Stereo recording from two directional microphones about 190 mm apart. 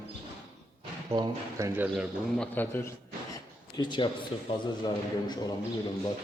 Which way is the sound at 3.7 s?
25° left (ahead or behind).